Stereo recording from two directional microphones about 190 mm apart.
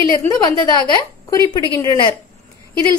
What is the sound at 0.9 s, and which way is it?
A woman's voice, 20° left (ahead or behind).